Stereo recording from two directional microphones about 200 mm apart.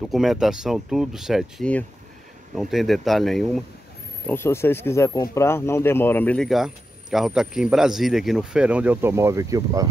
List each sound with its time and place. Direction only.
0.0 s speech: centre (ahead or behind)
4.3 s speech: 10° left (ahead or behind); by 9.8 s 15° right (ahead or behind)